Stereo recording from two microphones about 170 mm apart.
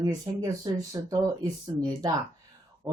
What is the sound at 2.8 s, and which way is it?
Speech, centre (ahead or behind).